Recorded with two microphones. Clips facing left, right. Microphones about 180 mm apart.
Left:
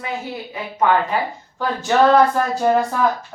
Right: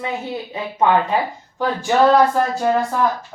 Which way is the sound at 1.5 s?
10° right (ahead or behind).